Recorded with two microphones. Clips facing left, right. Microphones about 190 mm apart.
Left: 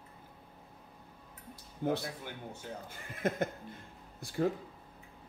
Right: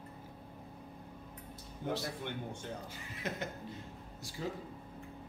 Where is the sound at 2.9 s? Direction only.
50° left (ahead or behind).